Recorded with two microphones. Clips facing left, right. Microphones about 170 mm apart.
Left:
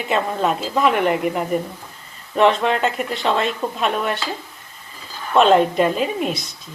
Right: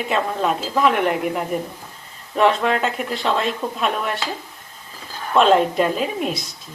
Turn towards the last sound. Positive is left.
turn(degrees=0)  # may be behind; listen again after turning